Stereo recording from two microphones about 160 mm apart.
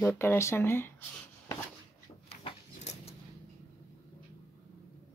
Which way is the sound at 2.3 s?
40° left (ahead or behind).